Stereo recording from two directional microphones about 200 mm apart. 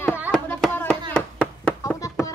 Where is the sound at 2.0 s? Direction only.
15° left (ahead or behind).